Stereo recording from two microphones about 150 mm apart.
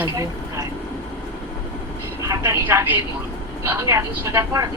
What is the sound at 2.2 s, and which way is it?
Speech, 20° right (ahead or behind).